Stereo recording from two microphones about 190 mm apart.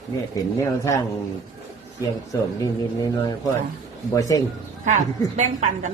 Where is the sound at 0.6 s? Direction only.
15° left (ahead or behind).